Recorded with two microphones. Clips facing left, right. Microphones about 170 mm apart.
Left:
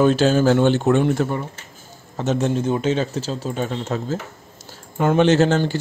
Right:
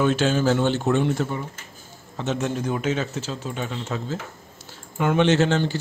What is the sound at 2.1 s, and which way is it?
A man's voice, 40° left (ahead or behind).